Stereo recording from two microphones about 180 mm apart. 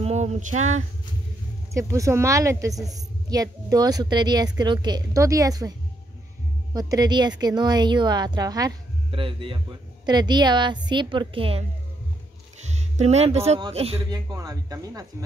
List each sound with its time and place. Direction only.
0.0 s female singing: 40° right (ahead or behind)
1.7 s speech: 15° right (ahead or behind)
12.9 s speech: 35° right (ahead or behind)
14.1 s speech: 20° right (ahead or behind)